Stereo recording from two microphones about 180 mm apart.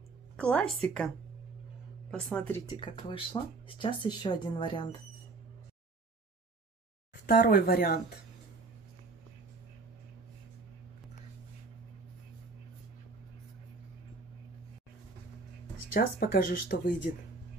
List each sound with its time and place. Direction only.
0.4 s speech: 5° left (ahead or behind)
2.6 s speech: 25° left (ahead or behind)
7.2 s speech: 55° left (ahead or behind)
15.9 s speech: 55° left (ahead or behind)